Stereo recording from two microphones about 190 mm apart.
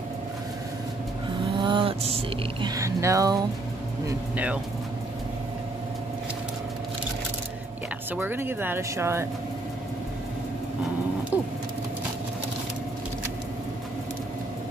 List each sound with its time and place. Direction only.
1.6 s a sound: 25° right (ahead or behind)
2.7 s speech: 15° right (ahead or behind)
8.2 s speech: 10° right (ahead or behind)
11.3 s speech: 10° right (ahead or behind)